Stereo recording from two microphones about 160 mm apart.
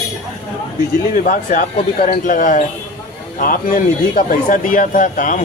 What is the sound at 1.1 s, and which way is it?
Speech, 55° left (ahead or behind).